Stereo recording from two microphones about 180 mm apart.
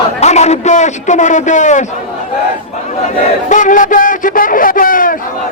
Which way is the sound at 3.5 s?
45° left (ahead or behind).